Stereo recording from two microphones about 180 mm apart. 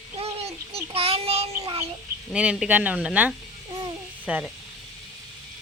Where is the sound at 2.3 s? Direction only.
5° right (ahead or behind).